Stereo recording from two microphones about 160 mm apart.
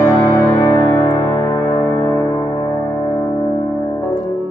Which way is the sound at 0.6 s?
20° left (ahead or behind).